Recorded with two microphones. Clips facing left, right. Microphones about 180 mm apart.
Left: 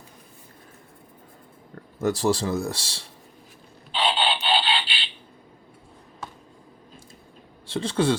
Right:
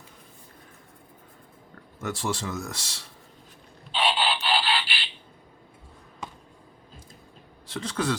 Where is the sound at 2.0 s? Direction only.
35° left (ahead or behind).